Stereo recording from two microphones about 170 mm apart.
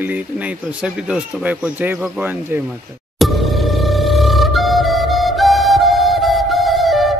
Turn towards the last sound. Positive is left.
turn(degrees=0)  # may be behind; listen again after turning